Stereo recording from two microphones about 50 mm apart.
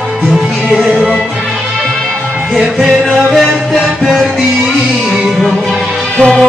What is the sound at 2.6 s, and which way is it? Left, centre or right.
Music, centre.